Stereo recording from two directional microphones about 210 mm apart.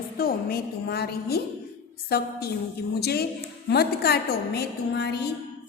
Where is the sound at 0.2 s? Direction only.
45° left (ahead or behind).